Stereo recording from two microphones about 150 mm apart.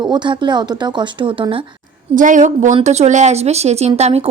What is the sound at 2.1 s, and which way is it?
A woman's voice, 60° right (ahead or behind).